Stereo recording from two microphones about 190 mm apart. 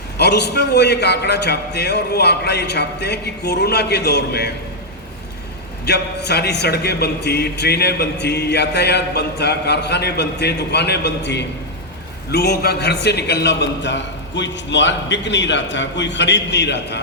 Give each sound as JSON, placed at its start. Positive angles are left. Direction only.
{"t": 0.2, "sound": "a man's voice", "side_deg": 60}
{"t": 5.8, "sound": "a man's voice", "side_deg": 60}